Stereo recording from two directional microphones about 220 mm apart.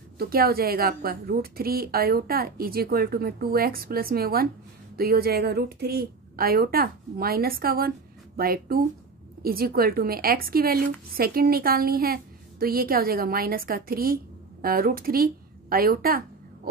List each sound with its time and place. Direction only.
0.2 s a woman's voice: 45° right (ahead or behind)